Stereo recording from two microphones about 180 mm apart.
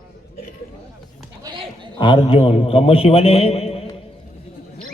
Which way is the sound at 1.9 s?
30° left (ahead or behind).